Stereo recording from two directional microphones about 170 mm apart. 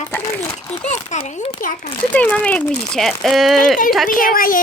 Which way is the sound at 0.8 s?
45° left (ahead or behind).